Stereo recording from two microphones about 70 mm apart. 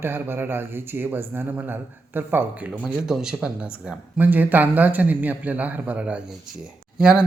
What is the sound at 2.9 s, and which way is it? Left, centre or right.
Speech, centre.